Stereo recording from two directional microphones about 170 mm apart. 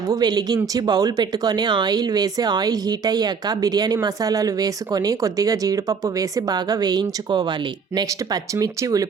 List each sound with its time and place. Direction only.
0.1 s speech: 25° right (ahead or behind)